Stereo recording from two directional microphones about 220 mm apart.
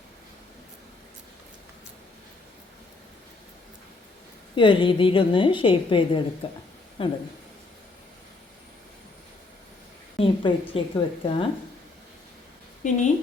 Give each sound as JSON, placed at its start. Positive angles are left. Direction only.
{"t": 4.5, "sound": "a woman's voice", "side_deg": 20}
{"t": 10.2, "sound": "a woman's voice", "side_deg": 25}
{"t": 12.8, "sound": "a woman's voice", "side_deg": 35}